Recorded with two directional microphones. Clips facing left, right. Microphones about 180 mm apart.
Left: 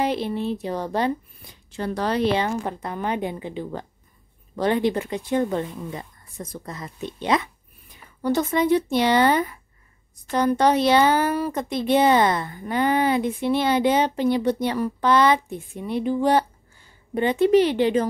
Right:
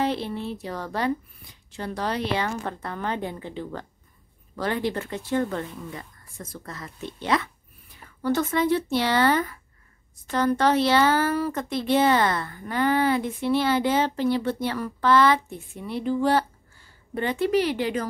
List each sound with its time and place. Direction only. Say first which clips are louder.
0.0 s speech: left 3 dB; 15° left (ahead or behind)
1.8 s speech: left 4 dB; 45° left (ahead or behind)
2.3 s speech: left 4 dB; 20° left (ahead or behind)